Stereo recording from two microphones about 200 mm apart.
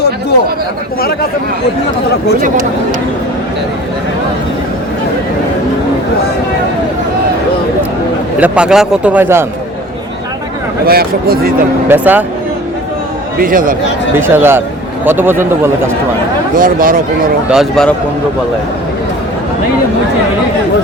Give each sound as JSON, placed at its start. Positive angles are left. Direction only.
{"t": 8.4, "sound": "a man's voice", "side_deg": -5}
{"t": 10.8, "sound": "speech", "side_deg": -50}
{"t": 11.9, "sound": "speech", "side_deg": -10}
{"t": 13.4, "sound": "speech", "side_deg": -45}
{"t": 14.2, "sound": "speech", "side_deg": -10}
{"t": 16.6, "sound": "speech", "side_deg": -45}
{"t": 17.5, "sound": "a man's voice", "side_deg": 0}